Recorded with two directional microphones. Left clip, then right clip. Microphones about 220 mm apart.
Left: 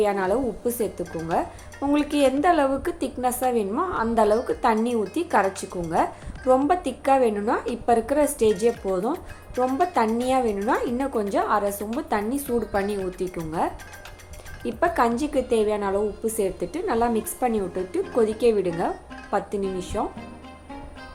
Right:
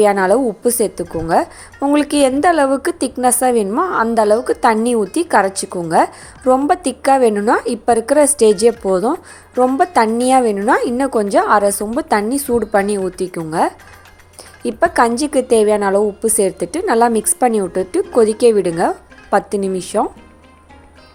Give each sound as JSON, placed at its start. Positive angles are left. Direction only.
{"t": 0.0, "sound": "a woman's voice", "side_deg": -50}